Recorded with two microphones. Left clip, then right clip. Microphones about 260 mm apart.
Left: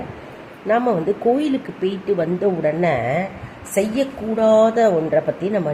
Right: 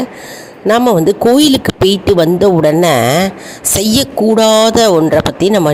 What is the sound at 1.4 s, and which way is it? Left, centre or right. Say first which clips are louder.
A woman's voice: right 12 dB; right.